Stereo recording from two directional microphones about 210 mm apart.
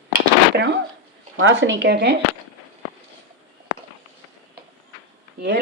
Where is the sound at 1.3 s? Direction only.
65° right (ahead or behind).